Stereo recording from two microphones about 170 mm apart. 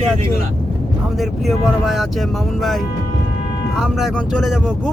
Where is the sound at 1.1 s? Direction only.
Centre (ahead or behind).